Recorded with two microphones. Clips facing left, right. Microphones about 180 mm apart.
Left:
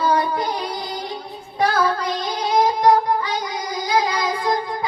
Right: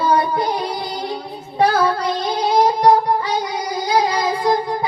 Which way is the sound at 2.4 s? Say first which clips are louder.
Right 2 dB; 30° right (ahead or behind).